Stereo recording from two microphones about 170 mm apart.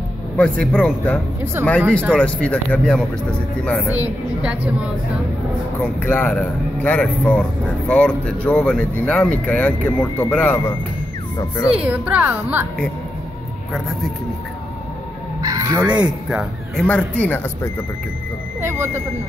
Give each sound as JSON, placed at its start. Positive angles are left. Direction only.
{"t": 0.4, "sound": "speech", "side_deg": 5}
{"t": 1.4, "sound": "a woman's voice", "side_deg": -15}
{"t": 2.1, "sound": "speech", "side_deg": 5}
{"t": 3.9, "sound": "a woman's voice", "side_deg": -10}
{"t": 5.8, "sound": "speech", "side_deg": 10}
{"t": 11.3, "sound": "a child's voice", "side_deg": 20}
{"t": 11.7, "sound": "a woman's voice", "side_deg": -10}
{"t": 15.4, "sound": "crow", "side_deg": -20}
{"t": 16.1, "sound": "speech", "side_deg": -5}
{"t": 16.8, "sound": "speech", "side_deg": 10}